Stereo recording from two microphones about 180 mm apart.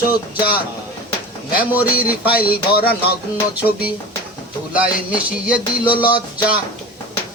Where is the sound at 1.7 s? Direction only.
10° right (ahead or behind).